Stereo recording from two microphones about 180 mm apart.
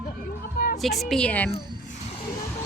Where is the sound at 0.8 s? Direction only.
Centre (ahead or behind).